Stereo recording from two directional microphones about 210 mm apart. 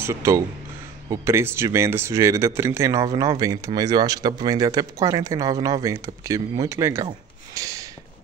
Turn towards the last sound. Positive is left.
turn(degrees=-15)  # may be behind; listen again after turning